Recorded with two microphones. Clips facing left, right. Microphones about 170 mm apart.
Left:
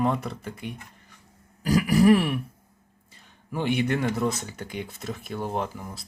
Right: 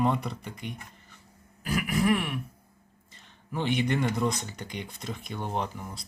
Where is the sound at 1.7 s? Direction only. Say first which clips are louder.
Left 7 dB; 35° left (ahead or behind).